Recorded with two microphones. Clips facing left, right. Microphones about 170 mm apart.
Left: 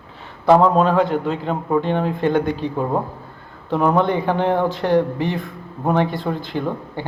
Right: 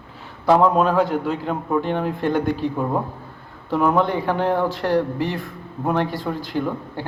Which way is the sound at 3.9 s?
5° right (ahead or behind).